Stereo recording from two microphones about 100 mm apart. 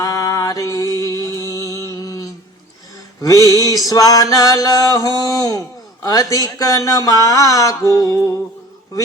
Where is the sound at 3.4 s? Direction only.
35° left (ahead or behind).